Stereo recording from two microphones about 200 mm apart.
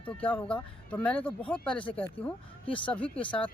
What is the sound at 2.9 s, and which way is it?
Speech, 5° left (ahead or behind).